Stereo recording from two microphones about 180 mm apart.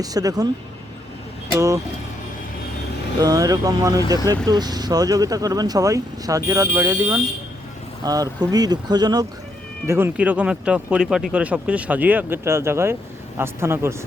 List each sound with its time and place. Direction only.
0.0 s speech: 20° right (ahead or behind)
1.5 s speech: 15° right (ahead or behind)
3.2 s speech: 20° right (ahead or behind)